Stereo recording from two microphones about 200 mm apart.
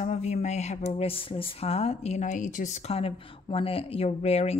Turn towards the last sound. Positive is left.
turn(degrees=30)  # may be behind; listen again after turning